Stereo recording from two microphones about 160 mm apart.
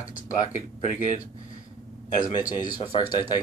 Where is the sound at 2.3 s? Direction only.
25° left (ahead or behind).